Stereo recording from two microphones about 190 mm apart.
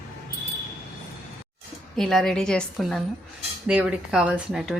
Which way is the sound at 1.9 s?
Centre (ahead or behind).